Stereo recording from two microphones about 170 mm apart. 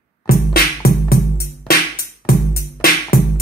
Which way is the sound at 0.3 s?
65° left (ahead or behind).